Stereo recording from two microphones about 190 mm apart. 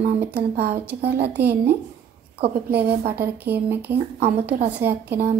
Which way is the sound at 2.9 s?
55° right (ahead or behind).